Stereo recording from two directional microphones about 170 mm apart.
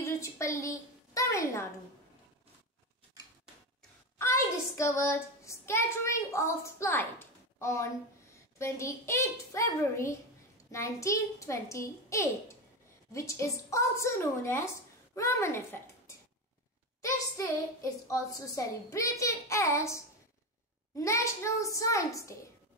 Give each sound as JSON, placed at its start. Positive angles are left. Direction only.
{"t": 0.0, "sound": "a woman's voice", "side_deg": 15}
{"t": 4.2, "sound": "a child's voice", "side_deg": 15}
{"t": 18.0, "sound": "a child's voice", "side_deg": 20}